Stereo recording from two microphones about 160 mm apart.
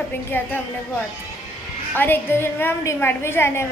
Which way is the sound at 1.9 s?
10° left (ahead or behind).